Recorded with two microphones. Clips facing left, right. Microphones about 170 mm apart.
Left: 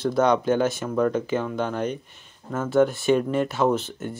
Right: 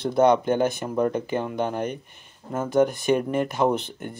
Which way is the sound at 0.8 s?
20° right (ahead or behind).